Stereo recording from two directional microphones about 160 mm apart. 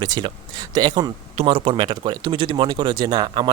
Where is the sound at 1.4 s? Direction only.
35° right (ahead or behind).